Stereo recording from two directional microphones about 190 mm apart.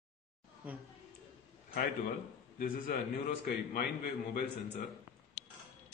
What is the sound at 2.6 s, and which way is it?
A man's voice, 50° left (ahead or behind).